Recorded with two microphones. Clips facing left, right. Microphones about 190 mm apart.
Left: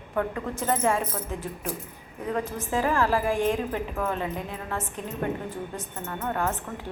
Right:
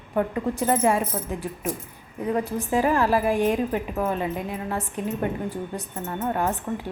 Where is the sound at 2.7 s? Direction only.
15° right (ahead or behind).